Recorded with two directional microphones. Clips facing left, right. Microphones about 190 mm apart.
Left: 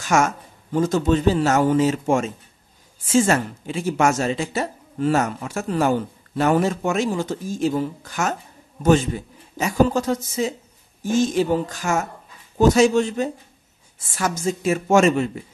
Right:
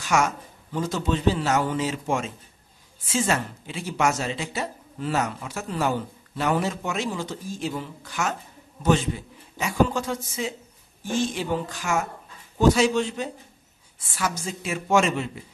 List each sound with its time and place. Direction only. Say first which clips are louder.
0.0 s a man's voice: left 4 dB; 45° left (ahead or behind)